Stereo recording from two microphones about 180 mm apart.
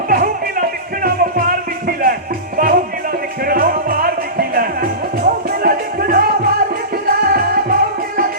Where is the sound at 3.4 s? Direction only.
55° right (ahead or behind).